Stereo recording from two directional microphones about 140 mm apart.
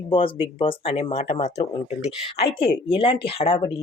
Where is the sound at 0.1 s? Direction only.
40° left (ahead or behind).